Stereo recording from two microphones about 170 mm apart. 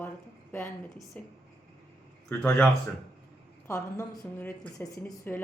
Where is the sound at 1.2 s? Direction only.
10° left (ahead or behind).